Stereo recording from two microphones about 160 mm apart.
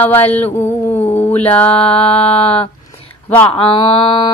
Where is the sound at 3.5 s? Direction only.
30° left (ahead or behind).